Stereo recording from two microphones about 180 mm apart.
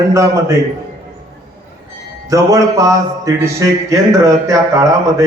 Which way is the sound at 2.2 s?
20° right (ahead or behind).